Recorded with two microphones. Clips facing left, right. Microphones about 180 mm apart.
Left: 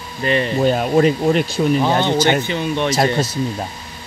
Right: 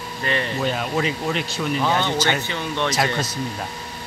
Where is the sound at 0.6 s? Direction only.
45° left (ahead or behind).